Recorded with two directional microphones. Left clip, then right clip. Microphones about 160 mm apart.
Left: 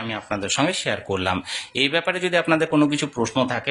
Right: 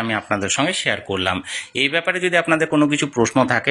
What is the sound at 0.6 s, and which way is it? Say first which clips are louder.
Speech: right 3 dB; centre (ahead or behind).